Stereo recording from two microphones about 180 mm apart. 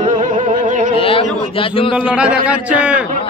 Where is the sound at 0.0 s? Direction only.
45° right (ahead or behind).